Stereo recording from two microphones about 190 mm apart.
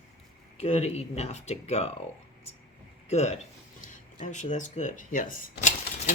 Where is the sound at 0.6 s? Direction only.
35° left (ahead or behind).